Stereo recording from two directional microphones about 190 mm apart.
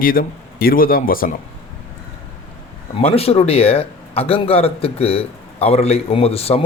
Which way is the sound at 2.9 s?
30° left (ahead or behind).